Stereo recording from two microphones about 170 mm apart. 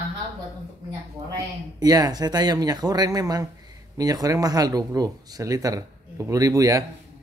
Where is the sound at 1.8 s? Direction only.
20° right (ahead or behind).